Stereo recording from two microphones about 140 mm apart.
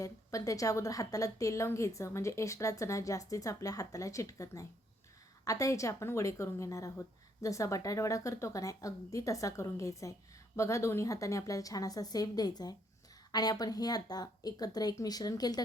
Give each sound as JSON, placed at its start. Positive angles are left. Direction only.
{"t": 0.0, "sound": "a woman's voice", "side_deg": 25}